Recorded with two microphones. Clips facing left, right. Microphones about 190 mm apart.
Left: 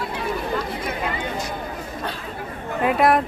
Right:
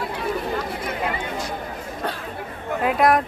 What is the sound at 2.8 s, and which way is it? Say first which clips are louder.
Speech: left 1 dB; centre (ahead or behind).